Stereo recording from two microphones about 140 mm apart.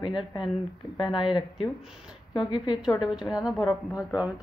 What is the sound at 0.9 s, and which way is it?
Speech, 35° left (ahead or behind).